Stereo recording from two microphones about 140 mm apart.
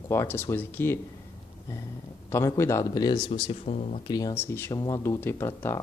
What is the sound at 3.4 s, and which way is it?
Speech, 50° left (ahead or behind).